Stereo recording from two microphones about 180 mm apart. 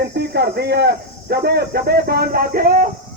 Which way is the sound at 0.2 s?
65° right (ahead or behind).